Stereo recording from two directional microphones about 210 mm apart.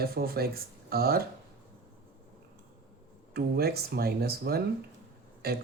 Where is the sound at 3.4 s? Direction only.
50° right (ahead or behind).